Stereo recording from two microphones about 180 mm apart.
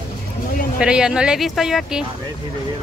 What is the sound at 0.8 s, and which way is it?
Speech, 5° right (ahead or behind).